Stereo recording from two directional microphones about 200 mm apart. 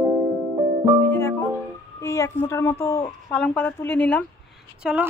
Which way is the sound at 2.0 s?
15° left (ahead or behind).